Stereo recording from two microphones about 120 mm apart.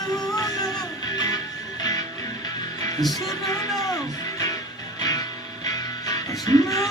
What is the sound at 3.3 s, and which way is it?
Music, 30° left (ahead or behind).